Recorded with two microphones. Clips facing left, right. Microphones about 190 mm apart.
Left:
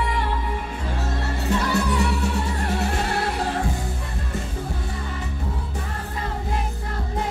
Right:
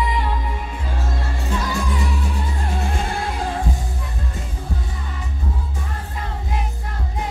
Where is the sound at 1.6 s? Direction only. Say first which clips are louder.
Left 2 dB; 70° left (ahead or behind).